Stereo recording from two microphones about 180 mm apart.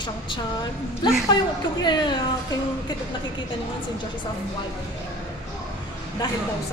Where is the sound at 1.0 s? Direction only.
25° left (ahead or behind).